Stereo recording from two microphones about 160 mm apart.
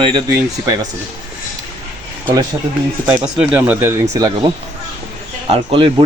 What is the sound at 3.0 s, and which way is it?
Speech, 5° right (ahead or behind).